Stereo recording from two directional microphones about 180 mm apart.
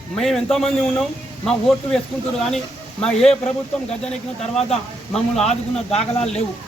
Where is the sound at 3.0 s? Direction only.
5° left (ahead or behind).